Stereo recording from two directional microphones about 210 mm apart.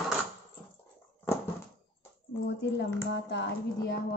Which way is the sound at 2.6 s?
55° left (ahead or behind).